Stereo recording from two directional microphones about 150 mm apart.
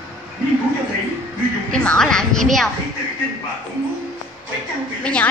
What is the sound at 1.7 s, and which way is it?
Speech, 5° left (ahead or behind).